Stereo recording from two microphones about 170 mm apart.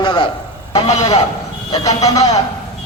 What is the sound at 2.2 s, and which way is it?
Speech, 20° left (ahead or behind).